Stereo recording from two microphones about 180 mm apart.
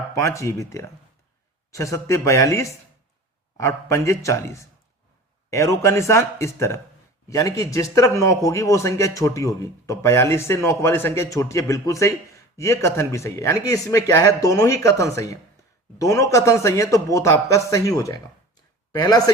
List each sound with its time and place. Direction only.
0.1 s a man's voice: 15° left (ahead or behind)